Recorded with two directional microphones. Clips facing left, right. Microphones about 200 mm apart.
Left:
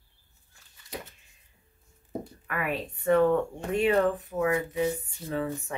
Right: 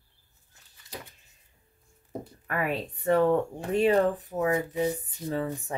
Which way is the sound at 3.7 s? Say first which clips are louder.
Right 1 dB; 35° right (ahead or behind).